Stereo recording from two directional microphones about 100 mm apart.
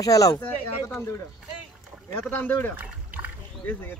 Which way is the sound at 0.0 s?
35° left (ahead or behind).